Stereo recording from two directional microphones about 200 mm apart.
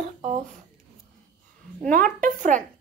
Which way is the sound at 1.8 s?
40° right (ahead or behind).